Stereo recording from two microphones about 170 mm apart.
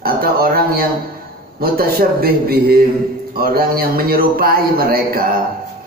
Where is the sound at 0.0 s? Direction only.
60° right (ahead or behind).